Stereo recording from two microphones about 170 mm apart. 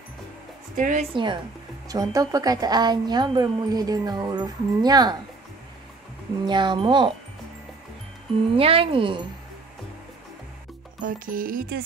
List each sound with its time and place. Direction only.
0.7 s a woman's voice: 50° right (ahead or behind)
1.1 s speech: 25° right (ahead or behind)
6.4 s speech: 25° right (ahead or behind)
8.5 s speech: 35° right (ahead or behind)
11.1 s music: 55° right (ahead or behind)